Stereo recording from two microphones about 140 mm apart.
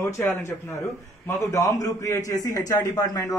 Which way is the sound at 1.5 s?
25° left (ahead or behind).